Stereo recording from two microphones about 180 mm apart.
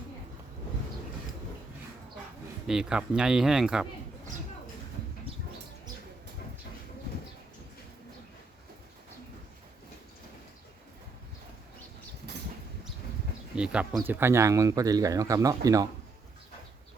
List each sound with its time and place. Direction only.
2.6 s speech: 5° right (ahead or behind)
13.6 s speech: 5° right (ahead or behind)